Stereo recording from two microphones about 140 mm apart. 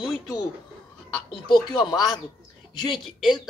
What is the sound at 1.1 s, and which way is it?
Speech, 35° left (ahead or behind).